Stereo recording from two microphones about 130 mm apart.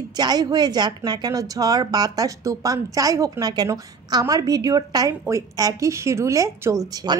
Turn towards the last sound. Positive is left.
turn(degrees=-25)  # may be behind; listen again after turning